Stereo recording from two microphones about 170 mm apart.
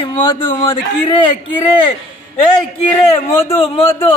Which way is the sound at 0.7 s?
30° left (ahead or behind).